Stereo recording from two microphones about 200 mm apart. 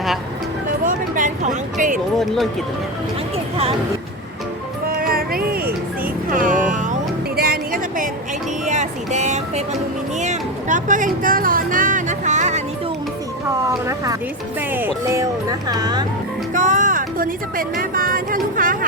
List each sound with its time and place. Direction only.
0.9 s a sound: 40° right (ahead or behind)
2.1 s speech: centre (ahead or behind)
3.3 s a sound: 30° right (ahead or behind)
4.9 s music: 45° right (ahead or behind)
7.3 s a sound: 50° right (ahead or behind)
8.6 s speech: 35° right (ahead or behind)
10.2 s music: 35° right (ahead or behind)
13.8 s speech: 15° right (ahead or behind)
16.6 s speech: 40° right (ahead or behind)